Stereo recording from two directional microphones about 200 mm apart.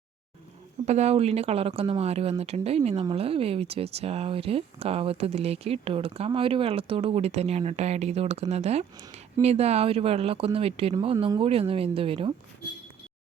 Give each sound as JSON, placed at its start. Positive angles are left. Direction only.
{"t": 0.9, "sound": "speech", "side_deg": -35}